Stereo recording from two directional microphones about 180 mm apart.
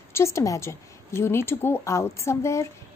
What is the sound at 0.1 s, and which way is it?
A woman's voice, 15° left (ahead or behind).